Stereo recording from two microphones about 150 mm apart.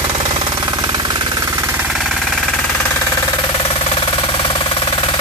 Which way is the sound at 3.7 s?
35° left (ahead or behind).